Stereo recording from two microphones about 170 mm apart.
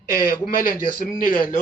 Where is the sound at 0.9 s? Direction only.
50° left (ahead or behind).